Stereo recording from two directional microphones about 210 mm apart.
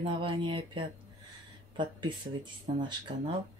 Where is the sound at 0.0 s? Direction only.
25° right (ahead or behind).